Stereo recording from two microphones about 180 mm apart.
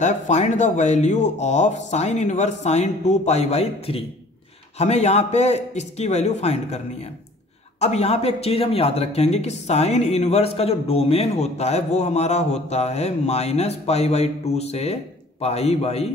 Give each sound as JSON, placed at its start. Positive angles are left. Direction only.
{"t": 0.0, "sound": "speech", "side_deg": 40}